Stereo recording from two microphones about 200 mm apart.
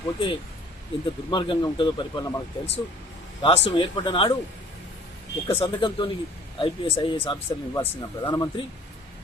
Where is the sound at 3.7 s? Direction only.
25° left (ahead or behind).